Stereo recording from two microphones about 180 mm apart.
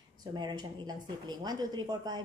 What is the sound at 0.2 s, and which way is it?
Speech, 25° right (ahead or behind).